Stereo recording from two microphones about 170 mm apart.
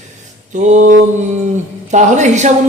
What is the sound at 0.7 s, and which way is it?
A woman's voice, 50° right (ahead or behind).